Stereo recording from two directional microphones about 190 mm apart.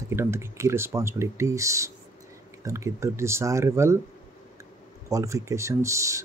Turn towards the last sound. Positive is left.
turn(degrees=-15)  # may be behind; listen again after turning